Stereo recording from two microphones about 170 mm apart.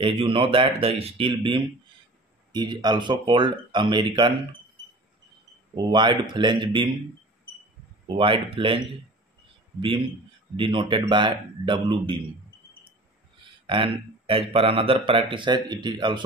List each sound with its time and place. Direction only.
0.0 s speech: 30° right (ahead or behind)
5.8 s speech: 25° right (ahead or behind)
8.2 s speech: 30° right (ahead or behind)
13.7 s speech: 30° right (ahead or behind)